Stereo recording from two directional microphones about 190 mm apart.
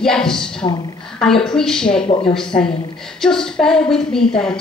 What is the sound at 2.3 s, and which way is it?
A woman's voice, 5° left (ahead or behind).